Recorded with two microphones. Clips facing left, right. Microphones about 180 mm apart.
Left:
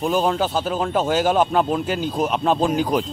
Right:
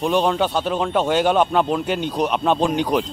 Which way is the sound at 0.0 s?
Centre (ahead or behind).